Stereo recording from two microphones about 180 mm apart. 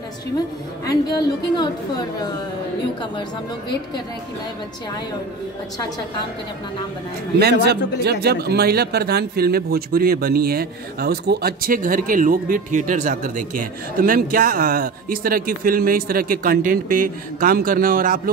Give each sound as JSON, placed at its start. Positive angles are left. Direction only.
{"t": 0.8, "sound": "a woman's voice", "side_deg": 20}
{"t": 8.0, "sound": "speech", "side_deg": -65}